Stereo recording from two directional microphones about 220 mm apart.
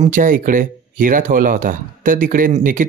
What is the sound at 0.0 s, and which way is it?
Speech, 35° right (ahead or behind).